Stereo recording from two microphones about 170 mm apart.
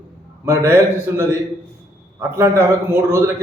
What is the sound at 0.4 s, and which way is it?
A man's voice, 15° right (ahead or behind).